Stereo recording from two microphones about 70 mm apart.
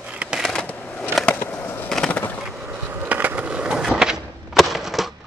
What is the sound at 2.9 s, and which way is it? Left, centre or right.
Skateboard, right.